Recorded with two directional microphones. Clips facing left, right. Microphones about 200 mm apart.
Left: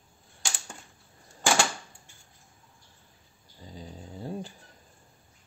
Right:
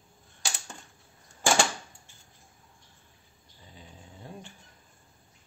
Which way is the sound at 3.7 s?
35° left (ahead or behind).